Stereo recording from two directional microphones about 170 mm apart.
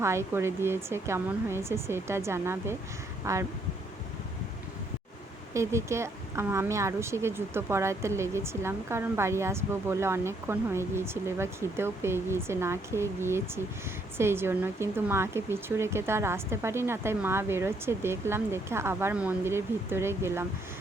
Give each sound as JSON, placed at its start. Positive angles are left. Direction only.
{"t": 0.0, "sound": "speech", "side_deg": -15}
{"t": 5.5, "sound": "speech", "side_deg": -15}